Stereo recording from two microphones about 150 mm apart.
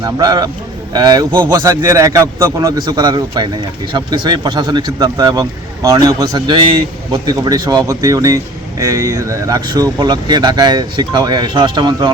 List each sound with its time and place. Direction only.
0.0 s speech: 25° right (ahead or behind)